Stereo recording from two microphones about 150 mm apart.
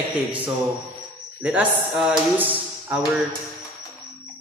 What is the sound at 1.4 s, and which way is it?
A man's voice, 10° right (ahead or behind).